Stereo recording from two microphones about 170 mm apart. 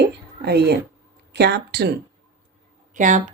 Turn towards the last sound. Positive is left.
turn(degrees=-50)  # may be behind; listen again after turning